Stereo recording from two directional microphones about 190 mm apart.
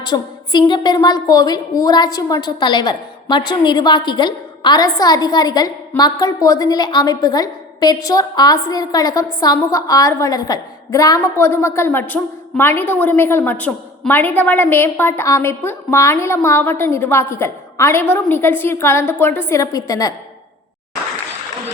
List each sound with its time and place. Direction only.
0.0 s a woman's voice: 20° left (ahead or behind)